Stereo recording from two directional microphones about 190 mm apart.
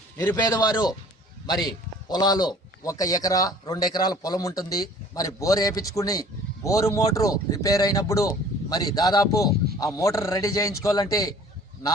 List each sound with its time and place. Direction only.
0.3 s a man's voice: 20° left (ahead or behind)